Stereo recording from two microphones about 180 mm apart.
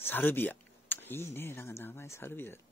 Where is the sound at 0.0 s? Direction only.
10° left (ahead or behind).